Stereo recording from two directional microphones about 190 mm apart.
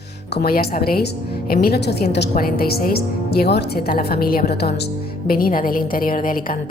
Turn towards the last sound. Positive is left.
turn(degrees=45)  # may be behind; listen again after turning